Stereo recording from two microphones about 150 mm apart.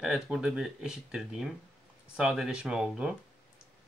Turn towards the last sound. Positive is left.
turn(degrees=-5)  # may be behind; listen again after turning